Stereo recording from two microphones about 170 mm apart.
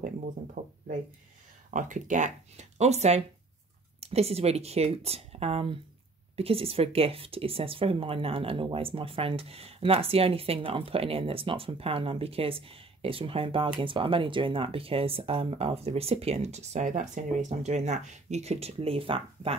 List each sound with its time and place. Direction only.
0.6 s speech: 45° right (ahead or behind)